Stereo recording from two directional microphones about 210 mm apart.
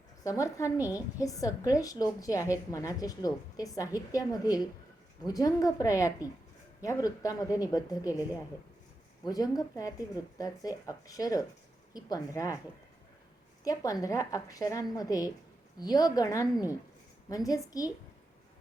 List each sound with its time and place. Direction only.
0.3 s a woman's voice: 15° left (ahead or behind)
9.2 s a woman's voice: 15° left (ahead or behind)
13.7 s a woman's voice: 15° left (ahead or behind)